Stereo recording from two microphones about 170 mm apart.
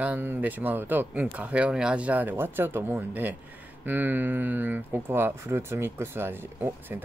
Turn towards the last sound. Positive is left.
turn(degrees=-15)  # may be behind; listen again after turning